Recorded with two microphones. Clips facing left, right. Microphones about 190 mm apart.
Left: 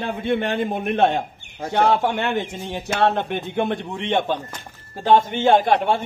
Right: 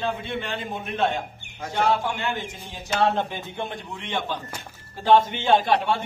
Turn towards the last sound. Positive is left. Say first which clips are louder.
# left 4 dB
turn(degrees=50)  # may be behind; listen again after turning